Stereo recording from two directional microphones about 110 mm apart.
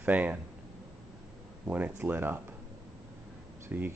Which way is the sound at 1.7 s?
15° right (ahead or behind).